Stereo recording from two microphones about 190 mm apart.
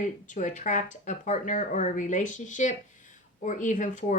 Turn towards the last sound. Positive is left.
turn(degrees=40)  # may be behind; listen again after turning